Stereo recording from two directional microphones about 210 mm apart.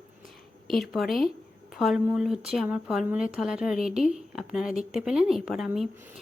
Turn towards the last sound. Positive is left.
turn(degrees=0)  # may be behind; listen again after turning